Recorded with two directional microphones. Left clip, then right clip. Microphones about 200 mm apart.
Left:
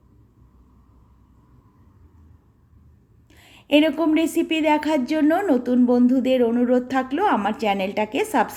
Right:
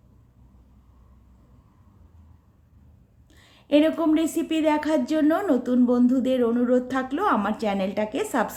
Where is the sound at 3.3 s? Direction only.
5° left (ahead or behind).